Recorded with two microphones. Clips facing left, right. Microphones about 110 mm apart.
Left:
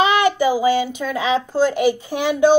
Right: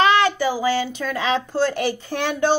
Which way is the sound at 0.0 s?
15° left (ahead or behind).